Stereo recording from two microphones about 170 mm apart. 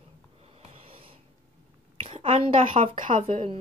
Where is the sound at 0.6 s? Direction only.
35° right (ahead or behind).